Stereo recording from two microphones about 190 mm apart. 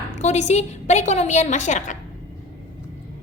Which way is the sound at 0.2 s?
35° left (ahead or behind).